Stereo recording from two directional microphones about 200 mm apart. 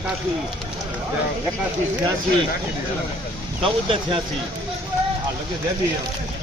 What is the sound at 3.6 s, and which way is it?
Speech, 25° right (ahead or behind).